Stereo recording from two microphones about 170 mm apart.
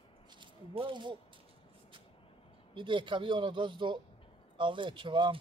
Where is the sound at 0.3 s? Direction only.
30° right (ahead or behind).